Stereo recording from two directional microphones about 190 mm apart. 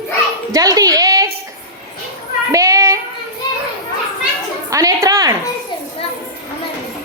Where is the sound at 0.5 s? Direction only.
20° right (ahead or behind).